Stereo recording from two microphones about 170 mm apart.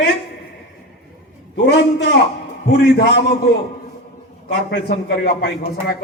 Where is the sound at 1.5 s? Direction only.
90° left.